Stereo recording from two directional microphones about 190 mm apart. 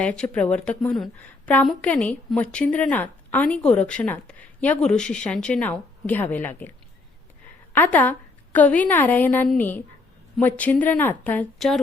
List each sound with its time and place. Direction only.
0.0 s a woman's voice: 5° left (ahead or behind)